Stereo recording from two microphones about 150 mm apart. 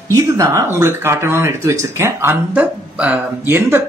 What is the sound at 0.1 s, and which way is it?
Speech, 20° right (ahead or behind).